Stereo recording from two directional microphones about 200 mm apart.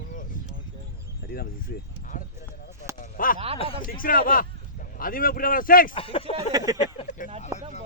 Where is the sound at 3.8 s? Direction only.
45° left (ahead or behind).